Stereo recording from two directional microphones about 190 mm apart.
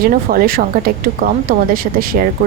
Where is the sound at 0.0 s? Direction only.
50° right (ahead or behind).